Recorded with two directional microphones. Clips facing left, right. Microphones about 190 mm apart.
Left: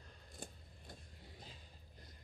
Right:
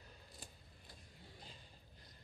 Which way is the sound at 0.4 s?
50° left (ahead or behind).